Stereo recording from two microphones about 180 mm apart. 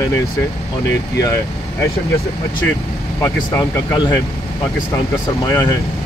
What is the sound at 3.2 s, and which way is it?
Speech, 15° left (ahead or behind).